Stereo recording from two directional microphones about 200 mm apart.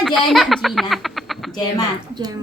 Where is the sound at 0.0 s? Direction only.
Centre (ahead or behind).